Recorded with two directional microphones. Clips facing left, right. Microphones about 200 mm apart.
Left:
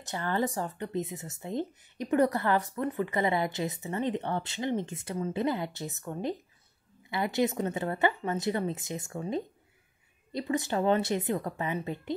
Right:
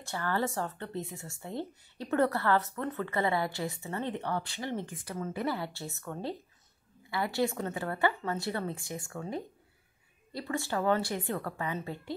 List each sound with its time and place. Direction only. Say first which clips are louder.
0.0 s speech: left 2 dB; 20° left (ahead or behind)